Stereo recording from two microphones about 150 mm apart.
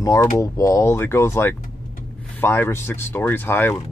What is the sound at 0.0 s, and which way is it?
Speech, 20° left (ahead or behind).